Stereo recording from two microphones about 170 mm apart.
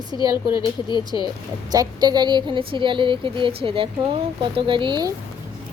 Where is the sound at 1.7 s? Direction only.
25° right (ahead or behind).